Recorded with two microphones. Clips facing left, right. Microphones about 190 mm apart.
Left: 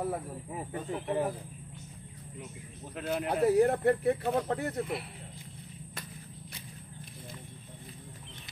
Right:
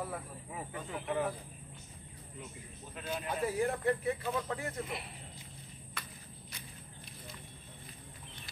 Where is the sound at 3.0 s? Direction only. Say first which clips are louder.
Left 7 dB; 65° left (ahead or behind).